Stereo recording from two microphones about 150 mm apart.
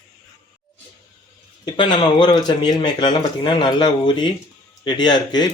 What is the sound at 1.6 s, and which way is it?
Speech, 30° left (ahead or behind).